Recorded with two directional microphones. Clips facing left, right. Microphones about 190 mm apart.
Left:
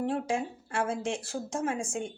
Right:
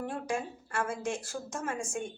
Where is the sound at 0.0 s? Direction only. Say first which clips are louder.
Left 4 dB; 25° left (ahead or behind).